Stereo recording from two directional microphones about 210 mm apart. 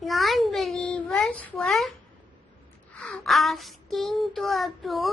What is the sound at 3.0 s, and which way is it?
A child's voice, 5° left (ahead or behind).